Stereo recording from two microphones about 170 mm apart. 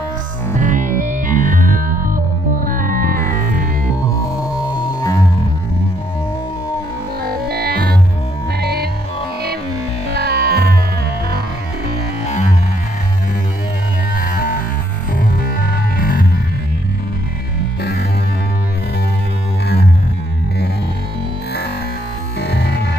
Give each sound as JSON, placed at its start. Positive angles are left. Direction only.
{"t": 0.6, "sound": "music", "side_deg": -50}
{"t": 4.7, "sound": "music", "side_deg": 20}
{"t": 7.2, "sound": "music", "side_deg": -65}
{"t": 10.1, "sound": "music", "side_deg": -70}
{"t": 12.3, "sound": "music", "side_deg": 45}
{"t": 14.2, "sound": "music", "side_deg": 55}
{"t": 22.4, "sound": "music", "side_deg": 75}